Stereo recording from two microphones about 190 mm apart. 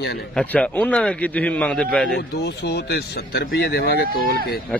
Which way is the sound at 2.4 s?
60° left (ahead or behind).